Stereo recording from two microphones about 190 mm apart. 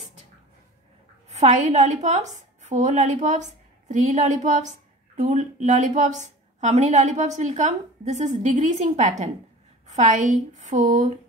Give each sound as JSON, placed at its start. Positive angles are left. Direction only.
{"t": 1.3, "sound": "a woman's voice", "side_deg": -35}